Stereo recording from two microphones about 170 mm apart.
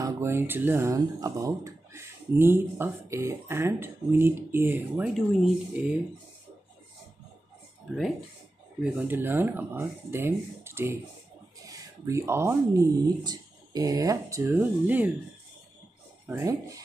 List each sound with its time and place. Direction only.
0.0 s speech: 15° right (ahead or behind)
8.9 s speech: 10° right (ahead or behind)
16.3 s speech: 15° right (ahead or behind)